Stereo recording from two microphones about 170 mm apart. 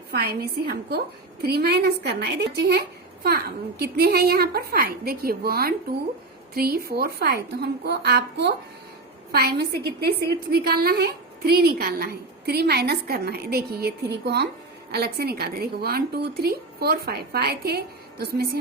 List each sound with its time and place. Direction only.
0.1 s a woman's voice: 65° right (ahead or behind)